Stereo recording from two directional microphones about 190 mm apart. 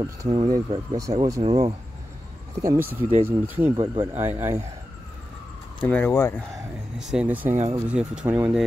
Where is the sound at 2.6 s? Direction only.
15° right (ahead or behind).